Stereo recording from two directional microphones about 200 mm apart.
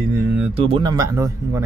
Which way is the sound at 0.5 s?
25° right (ahead or behind).